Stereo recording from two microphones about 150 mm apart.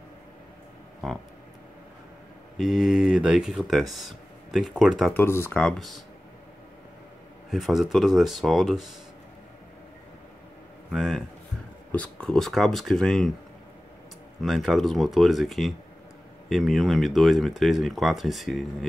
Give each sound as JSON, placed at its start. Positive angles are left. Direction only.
{"t": 2.5, "sound": "speech", "side_deg": 0}
{"t": 5.1, "sound": "speech", "side_deg": 15}
{"t": 7.5, "sound": "speech", "side_deg": 0}
{"t": 10.9, "sound": "speech", "side_deg": -5}
{"t": 11.9, "sound": "speech", "side_deg": 10}
{"t": 14.4, "sound": "speech", "side_deg": 0}